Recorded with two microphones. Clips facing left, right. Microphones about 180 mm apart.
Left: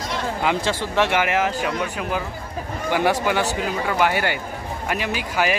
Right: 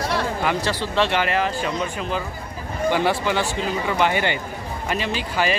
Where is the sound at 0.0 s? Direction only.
65° right (ahead or behind).